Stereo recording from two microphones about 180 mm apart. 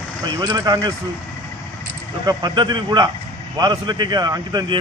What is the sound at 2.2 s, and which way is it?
Speech, 25° right (ahead or behind).